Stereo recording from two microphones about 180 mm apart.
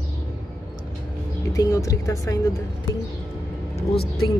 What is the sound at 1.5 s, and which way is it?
Speech, 20° left (ahead or behind).